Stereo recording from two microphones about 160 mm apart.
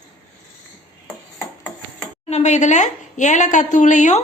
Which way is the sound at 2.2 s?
45° left (ahead or behind).